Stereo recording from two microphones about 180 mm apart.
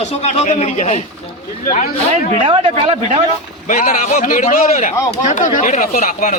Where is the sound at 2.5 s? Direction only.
30° right (ahead or behind).